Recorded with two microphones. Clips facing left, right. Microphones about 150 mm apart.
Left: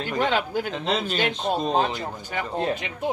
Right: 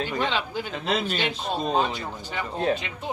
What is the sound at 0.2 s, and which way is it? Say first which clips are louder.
Speech: left 4 dB; 50° left (ahead or behind).